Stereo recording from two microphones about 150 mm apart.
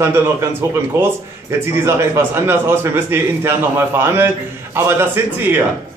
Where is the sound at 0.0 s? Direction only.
15° right (ahead or behind).